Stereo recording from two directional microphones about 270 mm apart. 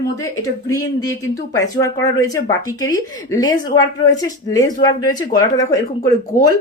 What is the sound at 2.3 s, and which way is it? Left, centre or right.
Speech, centre.